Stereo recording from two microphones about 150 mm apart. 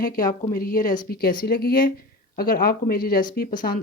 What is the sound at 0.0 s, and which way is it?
Speech, 70° left (ahead or behind).